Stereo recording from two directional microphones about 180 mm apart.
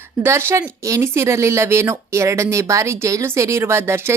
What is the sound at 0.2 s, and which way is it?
Speech, 15° right (ahead or behind).